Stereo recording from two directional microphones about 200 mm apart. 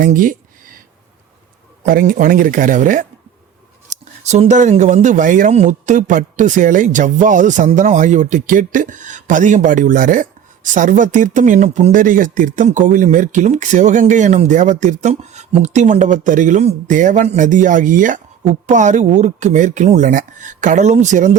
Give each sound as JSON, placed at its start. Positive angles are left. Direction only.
{"t": 0.0, "sound": "speech", "side_deg": -45}
{"t": 1.9, "sound": "speech", "side_deg": -45}
{"t": 4.2, "sound": "speech", "side_deg": -35}